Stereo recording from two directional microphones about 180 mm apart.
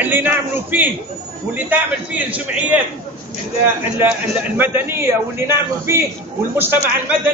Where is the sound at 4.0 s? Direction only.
10° right (ahead or behind).